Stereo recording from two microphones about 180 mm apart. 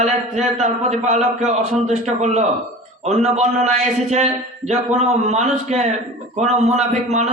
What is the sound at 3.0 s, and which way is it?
A man's voice, 40° right (ahead or behind).